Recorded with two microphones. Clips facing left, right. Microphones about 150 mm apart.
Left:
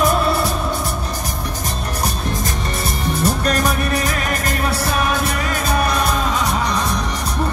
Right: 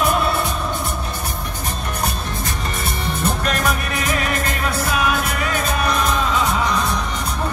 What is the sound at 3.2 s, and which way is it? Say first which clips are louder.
Music: left 3 dB; 40° left (ahead or behind).